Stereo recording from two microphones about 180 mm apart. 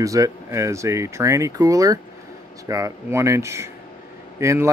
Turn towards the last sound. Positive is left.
turn(degrees=-15)  # may be behind; listen again after turning